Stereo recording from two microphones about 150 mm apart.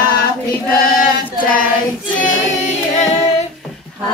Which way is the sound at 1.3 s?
65° left (ahead or behind).